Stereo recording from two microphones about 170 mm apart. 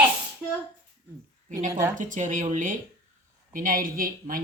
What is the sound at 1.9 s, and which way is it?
Speech, 50° right (ahead or behind).